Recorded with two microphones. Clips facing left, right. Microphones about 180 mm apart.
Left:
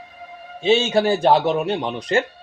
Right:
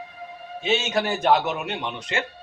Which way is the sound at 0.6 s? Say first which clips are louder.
Left 7 dB; 30° left (ahead or behind).